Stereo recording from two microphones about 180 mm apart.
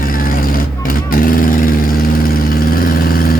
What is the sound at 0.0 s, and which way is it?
Vehicle, 50° left (ahead or behind).